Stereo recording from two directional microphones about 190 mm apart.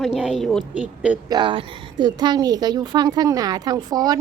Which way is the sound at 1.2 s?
25° right (ahead or behind).